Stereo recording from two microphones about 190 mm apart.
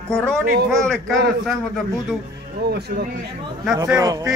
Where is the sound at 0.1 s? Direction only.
5° left (ahead or behind).